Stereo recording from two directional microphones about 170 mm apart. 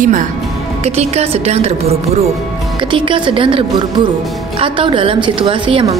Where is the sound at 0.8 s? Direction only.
40° right (ahead or behind).